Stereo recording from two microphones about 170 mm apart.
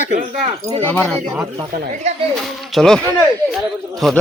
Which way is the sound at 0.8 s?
10° left (ahead or behind).